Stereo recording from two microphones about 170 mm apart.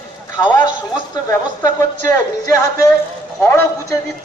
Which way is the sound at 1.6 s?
20° left (ahead or behind).